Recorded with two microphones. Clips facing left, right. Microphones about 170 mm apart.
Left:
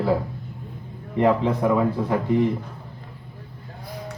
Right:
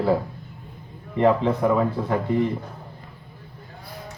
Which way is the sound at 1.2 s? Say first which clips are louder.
Even; 10° left (ahead or behind).